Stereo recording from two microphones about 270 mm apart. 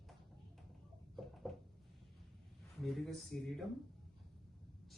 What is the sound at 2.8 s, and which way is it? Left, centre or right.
Speech, centre.